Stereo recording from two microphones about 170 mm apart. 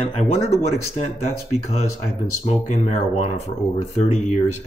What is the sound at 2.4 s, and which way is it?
Speech, 45° left (ahead or behind).